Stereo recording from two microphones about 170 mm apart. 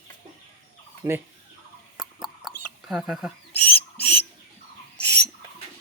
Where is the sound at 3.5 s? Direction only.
10° left (ahead or behind).